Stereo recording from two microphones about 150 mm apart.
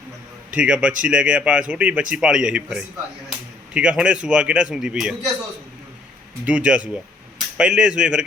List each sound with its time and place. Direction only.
0.5 s a man's voice: 5° right (ahead or behind)
6.4 s a man's voice: 10° right (ahead or behind)